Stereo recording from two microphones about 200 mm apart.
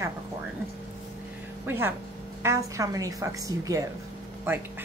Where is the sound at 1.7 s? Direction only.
10° right (ahead or behind).